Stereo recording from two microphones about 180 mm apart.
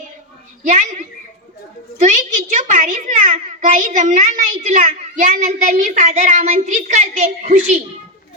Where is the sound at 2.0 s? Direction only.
45° right (ahead or behind).